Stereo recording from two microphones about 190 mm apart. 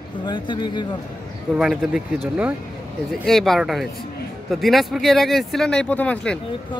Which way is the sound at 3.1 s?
Centre (ahead or behind).